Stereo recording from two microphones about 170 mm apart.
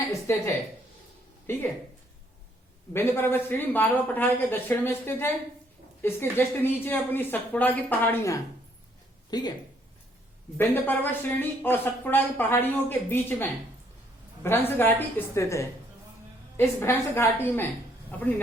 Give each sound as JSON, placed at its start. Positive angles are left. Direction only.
{"t": 1.5, "sound": "speech", "side_deg": 15}
{"t": 2.9, "sound": "speech", "side_deg": 15}
{"t": 9.3, "sound": "speech", "side_deg": 25}
{"t": 10.6, "sound": "speech", "side_deg": 10}